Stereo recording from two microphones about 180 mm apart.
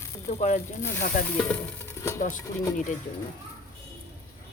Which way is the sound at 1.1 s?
50° left (ahead or behind).